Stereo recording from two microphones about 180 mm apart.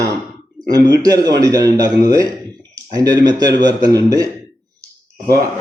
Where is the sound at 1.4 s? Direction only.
20° right (ahead or behind).